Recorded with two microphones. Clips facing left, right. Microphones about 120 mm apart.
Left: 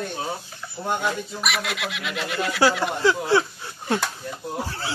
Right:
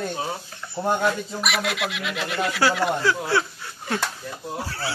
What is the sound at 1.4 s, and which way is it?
Speech, centre (ahead or behind).